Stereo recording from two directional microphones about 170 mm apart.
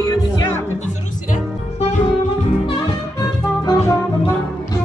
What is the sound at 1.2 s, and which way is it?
Music, 45° left (ahead or behind).